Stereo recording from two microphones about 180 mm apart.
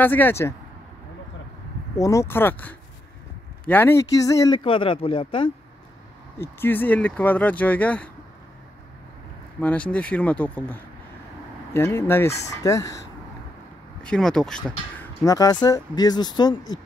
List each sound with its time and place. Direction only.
0.0 s speech: 10° left (ahead or behind)
2.0 s speech: 15° left (ahead or behind)
6.4 s speech: 10° left (ahead or behind)
9.6 s speech: 10° left (ahead or behind)
14.0 s speech: 5° left (ahead or behind)
15.2 s speech: 20° left (ahead or behind)